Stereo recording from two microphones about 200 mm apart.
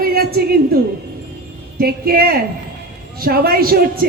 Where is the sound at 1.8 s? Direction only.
50° right (ahead or behind).